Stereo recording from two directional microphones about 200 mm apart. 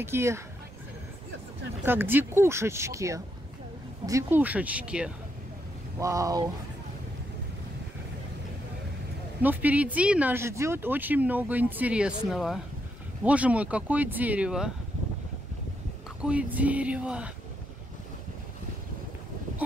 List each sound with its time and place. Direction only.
0.0 s speech: 15° right (ahead or behind)
1.9 s speech: 10° right (ahead or behind)
5.9 s speech: 15° right (ahead or behind)
9.4 s speech: 10° right (ahead or behind)
16.2 s speech: 5° right (ahead or behind)